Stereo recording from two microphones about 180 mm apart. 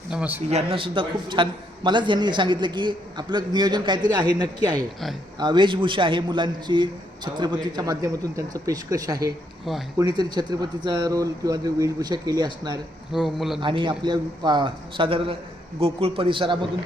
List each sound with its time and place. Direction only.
0.1 s a man's voice: 10° right (ahead or behind)
0.5 s a man's voice: 30° right (ahead or behind)
13.1 s speech: centre (ahead or behind)
13.6 s a man's voice: 25° right (ahead or behind)